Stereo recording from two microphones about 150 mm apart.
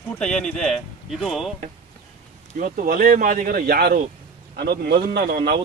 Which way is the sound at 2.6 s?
65° right (ahead or behind).